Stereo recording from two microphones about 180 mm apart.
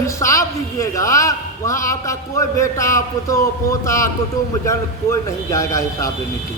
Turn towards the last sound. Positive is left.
turn(degrees=15)  # may be behind; listen again after turning